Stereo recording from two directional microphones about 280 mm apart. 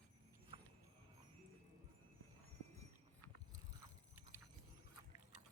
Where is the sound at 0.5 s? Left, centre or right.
Centre.